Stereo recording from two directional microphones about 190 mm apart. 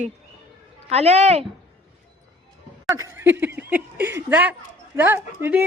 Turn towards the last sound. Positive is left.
turn(degrees=-10)  # may be behind; listen again after turning